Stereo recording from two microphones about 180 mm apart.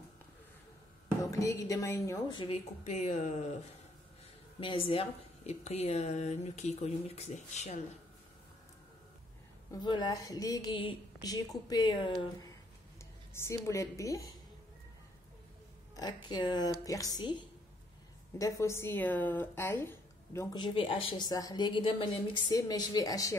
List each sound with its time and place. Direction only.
1.3 s a woman's voice: 20° left (ahead or behind); by 3.4 s 40° left (ahead or behind)
4.6 s a woman's voice: 30° left (ahead or behind)
9.7 s a woman's voice: 25° left (ahead or behind)
16.0 s a woman's voice: 20° left (ahead or behind)
18.4 s speech: 15° left (ahead or behind)
20.5 s a woman's voice: 25° left (ahead or behind)